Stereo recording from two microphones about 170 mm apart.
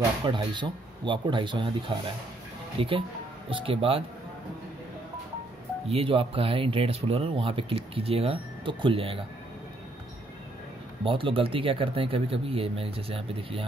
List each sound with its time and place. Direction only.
0.2 s speech: 30° right (ahead or behind)
5.9 s speech: 35° right (ahead or behind)
11.1 s speech: 30° right (ahead or behind)